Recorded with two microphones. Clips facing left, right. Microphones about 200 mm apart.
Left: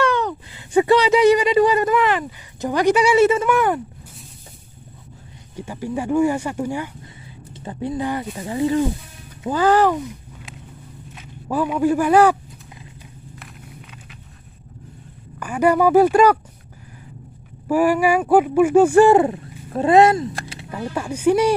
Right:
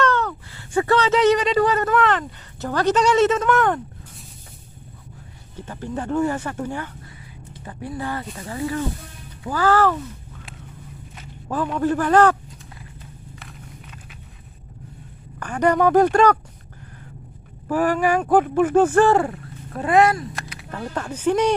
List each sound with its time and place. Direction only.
0.0 s speech: 15° left (ahead or behind)
5.6 s speech: 10° left (ahead or behind)
7.5 s speech: 25° left (ahead or behind)
11.1 s speech: 5° left (ahead or behind)
13.4 s walk: 5° left (ahead or behind)
15.3 s speech: 10° left (ahead or behind)
17.6 s speech: 10° left (ahead or behind); by 20.6 s 25° left (ahead or behind)
20.7 s speech: 10° left (ahead or behind)